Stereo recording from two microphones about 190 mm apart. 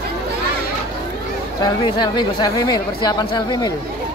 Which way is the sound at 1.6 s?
20° left (ahead or behind).